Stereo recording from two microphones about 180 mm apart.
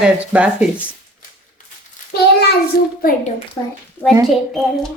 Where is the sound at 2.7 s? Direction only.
55° left (ahead or behind).